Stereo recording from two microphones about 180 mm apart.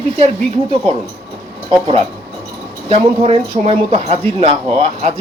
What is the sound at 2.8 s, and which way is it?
Speech, 35° right (ahead or behind).